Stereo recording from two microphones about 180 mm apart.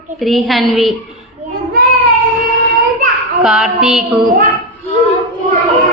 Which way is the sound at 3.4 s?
Centre (ahead or behind).